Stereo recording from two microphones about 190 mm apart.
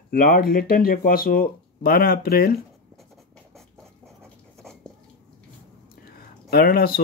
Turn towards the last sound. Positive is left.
turn(degrees=55)  # may be behind; listen again after turning